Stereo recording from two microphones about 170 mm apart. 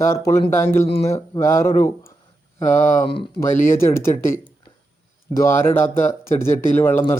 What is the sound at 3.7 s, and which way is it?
Speech, 15° left (ahead or behind).